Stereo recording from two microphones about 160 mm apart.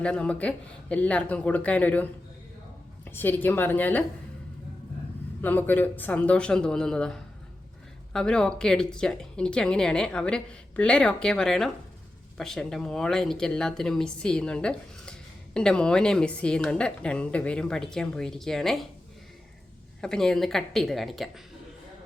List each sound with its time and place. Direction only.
0.0 s speech: 5° left (ahead or behind)
5.4 s speech: 10° left (ahead or behind)
20.0 s speech: 5° left (ahead or behind)